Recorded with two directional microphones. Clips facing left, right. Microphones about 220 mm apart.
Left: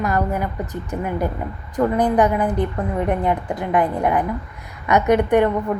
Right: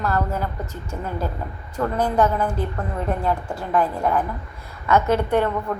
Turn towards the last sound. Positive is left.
turn(degrees=15)  # may be behind; listen again after turning